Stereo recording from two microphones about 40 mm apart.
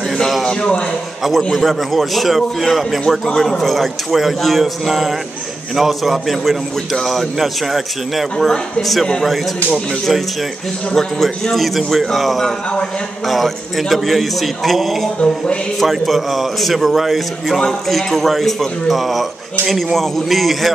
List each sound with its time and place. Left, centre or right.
0.5 s a sound: left
1.2 s a man's voice: centre
11.0 s a man's voice: centre